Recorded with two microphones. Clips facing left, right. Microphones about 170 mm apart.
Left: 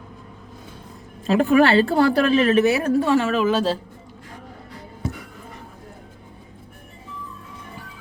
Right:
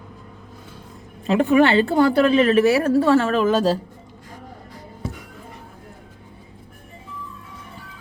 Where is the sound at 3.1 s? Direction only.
10° left (ahead or behind).